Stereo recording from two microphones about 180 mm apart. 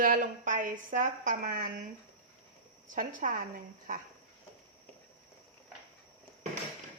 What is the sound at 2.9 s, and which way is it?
Speech, 50° right (ahead or behind).